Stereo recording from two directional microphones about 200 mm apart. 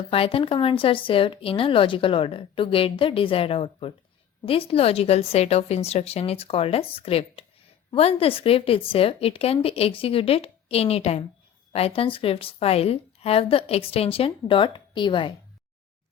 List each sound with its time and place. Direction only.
0.1 s a woman's voice: 25° left (ahead or behind)